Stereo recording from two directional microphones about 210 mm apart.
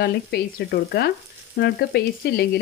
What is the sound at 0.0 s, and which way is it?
Frying, 50° left (ahead or behind).